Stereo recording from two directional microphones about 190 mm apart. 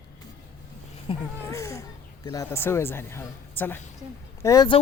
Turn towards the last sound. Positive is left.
turn(degrees=20)  # may be behind; listen again after turning